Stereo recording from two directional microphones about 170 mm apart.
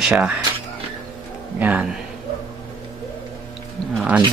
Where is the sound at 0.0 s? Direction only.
5° right (ahead or behind).